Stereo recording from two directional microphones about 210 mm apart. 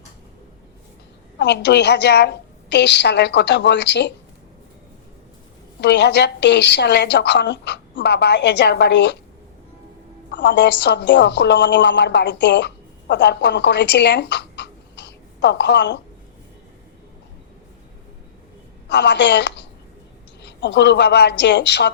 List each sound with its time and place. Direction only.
1.4 s a woman's voice: 55° left (ahead or behind)
5.8 s a woman's voice: 55° left (ahead or behind)
10.3 s a woman's voice: 55° left (ahead or behind)
18.9 s a woman's voice: 55° left (ahead or behind)